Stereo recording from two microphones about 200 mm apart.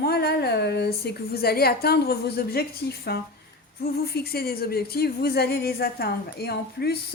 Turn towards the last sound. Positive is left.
turn(degrees=50)  # may be behind; listen again after turning